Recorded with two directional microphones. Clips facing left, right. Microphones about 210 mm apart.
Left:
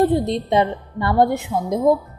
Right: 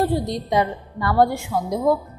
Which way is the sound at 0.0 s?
25° left (ahead or behind).